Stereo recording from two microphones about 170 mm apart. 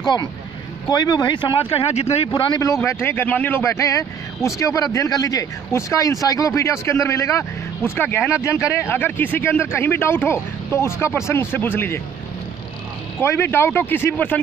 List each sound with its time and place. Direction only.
0.0 s speech: 25° left (ahead or behind)
13.2 s speech: 15° left (ahead or behind)